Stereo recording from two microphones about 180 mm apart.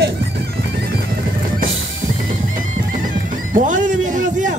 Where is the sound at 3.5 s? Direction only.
45° right (ahead or behind).